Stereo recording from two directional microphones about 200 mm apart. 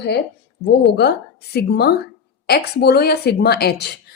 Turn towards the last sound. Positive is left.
turn(degrees=55)  # may be behind; listen again after turning